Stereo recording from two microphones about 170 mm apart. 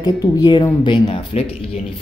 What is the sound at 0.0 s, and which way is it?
Speech, 25° left (ahead or behind).